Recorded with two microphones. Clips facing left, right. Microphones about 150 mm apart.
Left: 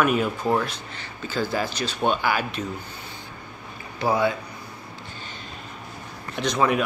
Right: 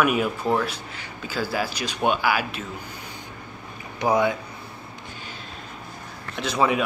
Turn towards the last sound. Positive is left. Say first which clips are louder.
# even
turn(degrees=-5)  # may be behind; listen again after turning